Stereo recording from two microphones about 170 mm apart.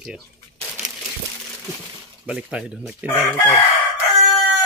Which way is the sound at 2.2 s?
5° right (ahead or behind).